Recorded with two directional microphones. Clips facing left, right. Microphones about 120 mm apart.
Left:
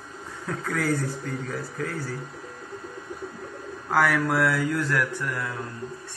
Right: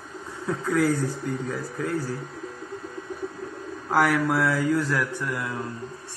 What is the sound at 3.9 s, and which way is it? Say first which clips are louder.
A man's voice: right 1 dB; 10° right (ahead or behind).